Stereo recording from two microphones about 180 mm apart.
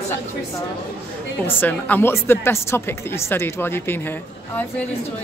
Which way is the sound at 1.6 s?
10° left (ahead or behind).